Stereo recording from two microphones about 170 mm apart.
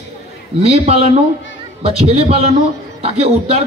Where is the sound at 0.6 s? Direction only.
35° right (ahead or behind).